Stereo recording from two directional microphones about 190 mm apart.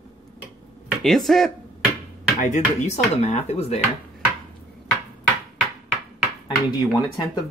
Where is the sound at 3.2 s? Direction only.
35° left (ahead or behind).